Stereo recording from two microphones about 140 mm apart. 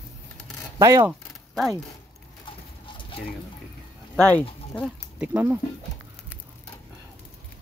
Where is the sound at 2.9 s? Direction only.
35° left (ahead or behind).